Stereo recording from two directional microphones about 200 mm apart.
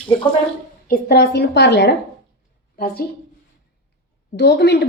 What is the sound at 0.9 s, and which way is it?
A woman's voice, 55° left (ahead or behind).